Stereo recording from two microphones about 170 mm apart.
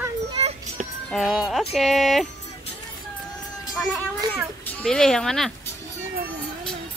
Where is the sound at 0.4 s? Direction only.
35° right (ahead or behind).